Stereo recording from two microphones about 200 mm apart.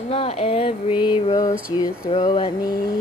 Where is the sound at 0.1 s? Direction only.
30° left (ahead or behind).